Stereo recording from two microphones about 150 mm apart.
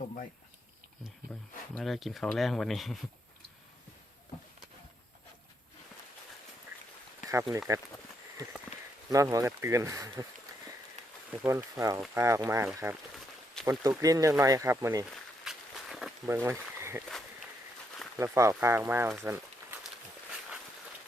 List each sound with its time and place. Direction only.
1.7 s speech: centre (ahead or behind)
7.3 s speech: 20° right (ahead or behind)
9.0 s speech: 20° right (ahead or behind)
11.3 s speech: 20° right (ahead or behind)
13.7 s speech: 25° right (ahead or behind)
15.1 s walk: centre (ahead or behind)
16.2 s speech: 15° right (ahead or behind)
18.2 s speech: 20° right (ahead or behind)